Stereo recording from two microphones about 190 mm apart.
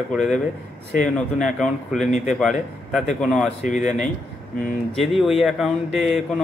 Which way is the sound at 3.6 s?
40° left (ahead or behind).